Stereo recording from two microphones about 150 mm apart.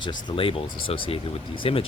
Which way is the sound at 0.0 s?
30° left (ahead or behind).